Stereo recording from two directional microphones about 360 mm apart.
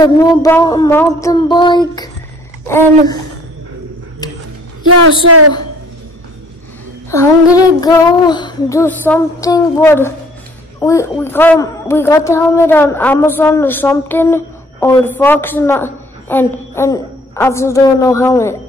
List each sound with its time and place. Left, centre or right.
0.0 s a woman's voice: centre
5.2 s a woman's voice: right
7.1 s a woman's voice: centre